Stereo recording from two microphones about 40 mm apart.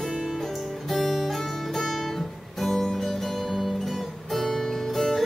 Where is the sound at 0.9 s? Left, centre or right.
Centre.